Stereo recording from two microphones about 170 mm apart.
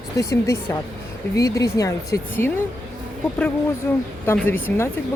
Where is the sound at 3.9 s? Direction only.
10° left (ahead or behind).